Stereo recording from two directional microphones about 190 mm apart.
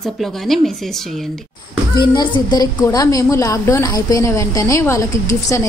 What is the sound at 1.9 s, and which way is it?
A woman's voice, 20° left (ahead or behind).